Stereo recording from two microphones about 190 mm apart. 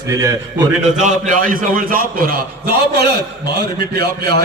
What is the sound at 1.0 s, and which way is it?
A man's voice, 40° right (ahead or behind).